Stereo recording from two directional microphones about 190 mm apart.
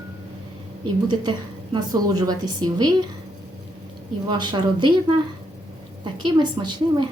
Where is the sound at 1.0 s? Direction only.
25° right (ahead or behind).